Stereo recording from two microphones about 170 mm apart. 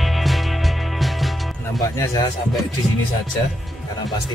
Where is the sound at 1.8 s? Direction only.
20° left (ahead or behind).